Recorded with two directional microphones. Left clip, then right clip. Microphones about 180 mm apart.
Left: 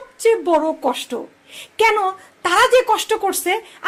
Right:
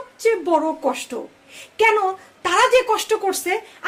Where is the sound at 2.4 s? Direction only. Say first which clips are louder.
Left 2 dB; 30° left (ahead or behind).